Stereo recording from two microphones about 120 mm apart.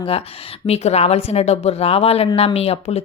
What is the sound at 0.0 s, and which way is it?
Speech, 55° left (ahead or behind).